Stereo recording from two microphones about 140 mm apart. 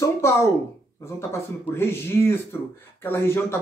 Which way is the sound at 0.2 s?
20° left (ahead or behind).